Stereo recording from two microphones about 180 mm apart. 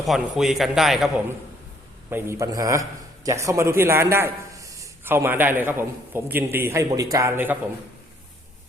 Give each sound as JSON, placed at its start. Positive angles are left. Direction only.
{"t": 0.0, "sound": "a man's voice", "side_deg": 0}
{"t": 2.0, "sound": "a man's voice", "side_deg": -15}